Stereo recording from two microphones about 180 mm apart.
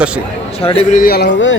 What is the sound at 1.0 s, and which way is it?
Speech, 60° left (ahead or behind).